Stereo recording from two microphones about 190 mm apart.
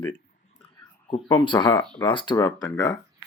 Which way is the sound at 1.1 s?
25° left (ahead or behind).